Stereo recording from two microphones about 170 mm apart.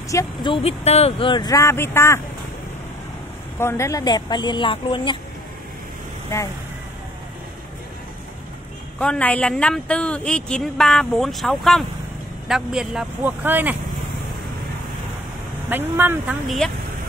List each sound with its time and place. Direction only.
0.1 s speech: 25° left (ahead or behind)
3.5 s speech: 15° left (ahead or behind)
9.0 s a woman's voice: 10° left (ahead or behind); by 13.7 s 10° right (ahead or behind)
15.7 s speech: 10° right (ahead or behind)
16.4 s a woman's voice: centre (ahead or behind)